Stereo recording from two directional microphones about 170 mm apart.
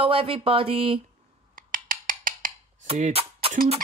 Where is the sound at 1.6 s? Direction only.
55° right (ahead or behind).